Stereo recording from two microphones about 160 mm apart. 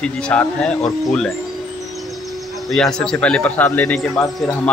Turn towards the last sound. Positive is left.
turn(degrees=20)  # may be behind; listen again after turning